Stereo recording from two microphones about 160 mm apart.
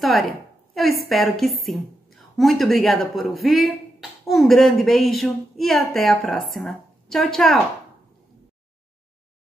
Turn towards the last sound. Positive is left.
turn(degrees=0)  # may be behind; listen again after turning